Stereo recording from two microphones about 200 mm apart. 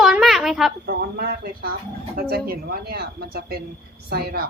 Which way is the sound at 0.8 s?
55° right (ahead or behind).